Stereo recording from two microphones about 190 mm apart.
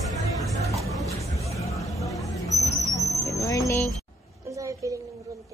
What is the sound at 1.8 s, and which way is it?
Vehicle, 15° left (ahead or behind).